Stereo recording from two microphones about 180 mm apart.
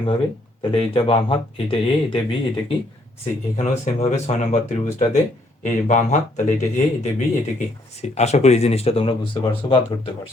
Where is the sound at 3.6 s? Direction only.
40° left (ahead or behind).